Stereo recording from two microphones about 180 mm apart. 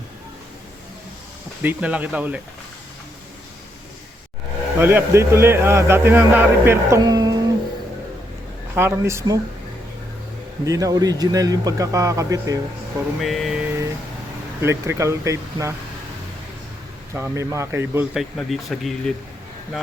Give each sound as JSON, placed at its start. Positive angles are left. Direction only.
{"t": 1.6, "sound": "speech", "side_deg": -10}
{"t": 4.8, "sound": "speech", "side_deg": -10}
{"t": 8.7, "sound": "speech", "side_deg": -15}
{"t": 10.7, "sound": "speech", "side_deg": -20}
{"t": 13.2, "sound": "speech", "side_deg": 0}
{"t": 14.6, "sound": "speech", "side_deg": -15}
{"t": 17.2, "sound": "speech", "side_deg": -15}
{"t": 18.2, "sound": "speech", "side_deg": 0}